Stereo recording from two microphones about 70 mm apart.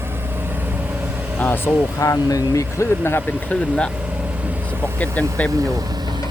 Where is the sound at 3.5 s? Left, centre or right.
Centre.